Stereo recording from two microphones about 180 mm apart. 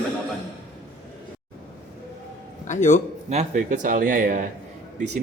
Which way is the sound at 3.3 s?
40° right (ahead or behind).